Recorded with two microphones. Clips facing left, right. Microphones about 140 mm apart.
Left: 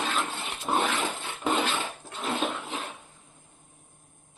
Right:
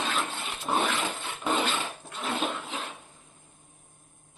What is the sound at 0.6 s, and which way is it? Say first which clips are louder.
Dog: left 1 dB; centre (ahead or behind).